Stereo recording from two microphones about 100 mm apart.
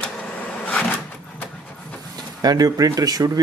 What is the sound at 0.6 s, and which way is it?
Drawer open or close, 15° left (ahead or behind).